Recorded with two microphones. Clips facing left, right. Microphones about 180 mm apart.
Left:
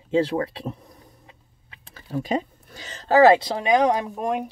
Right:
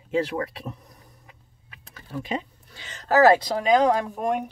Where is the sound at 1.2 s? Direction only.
30° left (ahead or behind).